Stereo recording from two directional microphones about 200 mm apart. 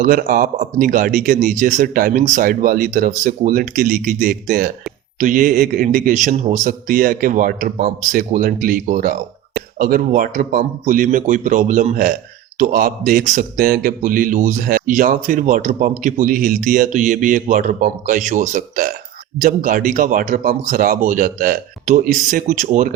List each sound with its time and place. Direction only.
0.0 s speech: 45° right (ahead or behind)